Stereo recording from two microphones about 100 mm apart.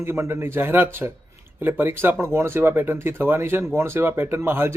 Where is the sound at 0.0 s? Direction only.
25° right (ahead or behind).